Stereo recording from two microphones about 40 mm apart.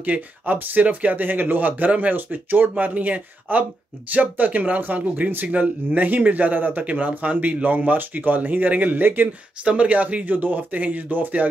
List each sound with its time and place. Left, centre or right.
0.0 s speech: right
9.0 s speech: right
9.7 s speech: right